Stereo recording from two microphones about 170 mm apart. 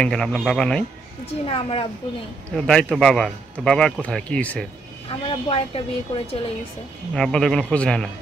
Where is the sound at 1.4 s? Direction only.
35° left (ahead or behind).